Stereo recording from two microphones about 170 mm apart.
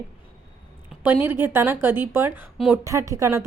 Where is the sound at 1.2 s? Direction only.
10° right (ahead or behind).